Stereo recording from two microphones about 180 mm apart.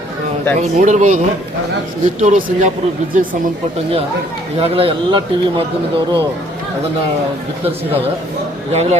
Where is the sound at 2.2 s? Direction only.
40° right (ahead or behind).